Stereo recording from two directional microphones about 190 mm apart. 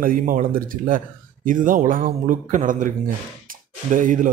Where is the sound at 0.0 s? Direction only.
45° right (ahead or behind).